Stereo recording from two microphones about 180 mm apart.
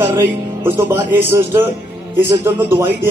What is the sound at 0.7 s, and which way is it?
A man's voice, 15° right (ahead or behind).